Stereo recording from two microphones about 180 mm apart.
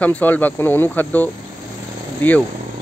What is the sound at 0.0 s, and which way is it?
Speech, 10° left (ahead or behind).